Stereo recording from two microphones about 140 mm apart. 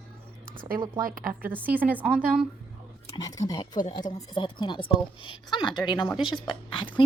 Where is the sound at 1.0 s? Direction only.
80° right.